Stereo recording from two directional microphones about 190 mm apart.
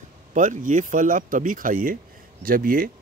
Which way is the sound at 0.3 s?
40° right (ahead or behind).